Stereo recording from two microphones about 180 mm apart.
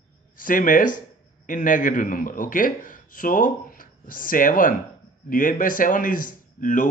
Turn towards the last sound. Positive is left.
turn(degrees=50)  # may be behind; listen again after turning